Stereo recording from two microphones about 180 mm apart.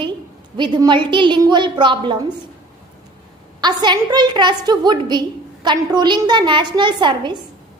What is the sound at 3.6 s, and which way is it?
A woman's voice, 25° right (ahead or behind).